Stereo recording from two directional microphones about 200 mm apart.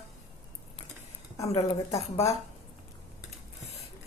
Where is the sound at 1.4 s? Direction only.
30° left (ahead or behind).